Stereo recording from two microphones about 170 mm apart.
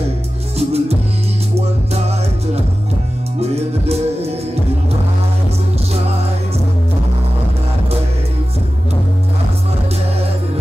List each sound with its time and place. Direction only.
0.6 s music: 35° right (ahead or behind)
2.0 s music: 40° right (ahead or behind)